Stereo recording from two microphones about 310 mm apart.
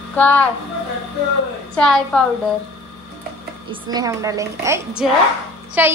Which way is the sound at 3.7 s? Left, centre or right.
Centre.